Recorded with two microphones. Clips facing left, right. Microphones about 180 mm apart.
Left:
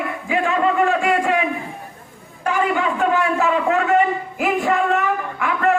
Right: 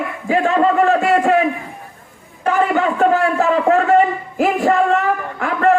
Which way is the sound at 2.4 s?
45° right (ahead or behind).